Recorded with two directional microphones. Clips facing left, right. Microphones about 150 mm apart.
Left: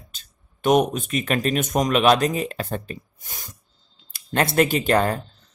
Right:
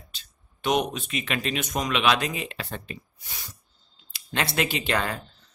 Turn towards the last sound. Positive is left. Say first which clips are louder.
# left 7 dB
turn(degrees=45)  # may be behind; listen again after turning